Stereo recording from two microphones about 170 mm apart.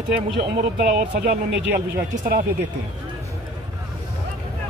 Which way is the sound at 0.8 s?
55° right (ahead or behind).